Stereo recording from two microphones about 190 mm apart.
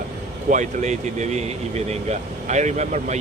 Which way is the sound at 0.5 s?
40° right (ahead or behind).